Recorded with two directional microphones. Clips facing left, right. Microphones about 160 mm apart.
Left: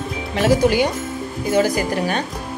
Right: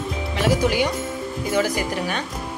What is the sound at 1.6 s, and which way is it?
Speech, 40° left (ahead or behind).